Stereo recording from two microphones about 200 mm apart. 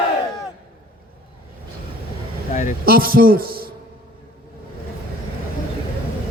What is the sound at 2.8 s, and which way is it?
Speech, 50° right (ahead or behind).